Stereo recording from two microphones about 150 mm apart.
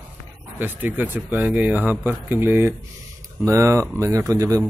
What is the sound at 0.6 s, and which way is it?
Speech, 10° right (ahead or behind).